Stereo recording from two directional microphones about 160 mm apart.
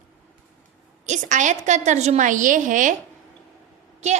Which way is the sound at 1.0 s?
50° right (ahead or behind).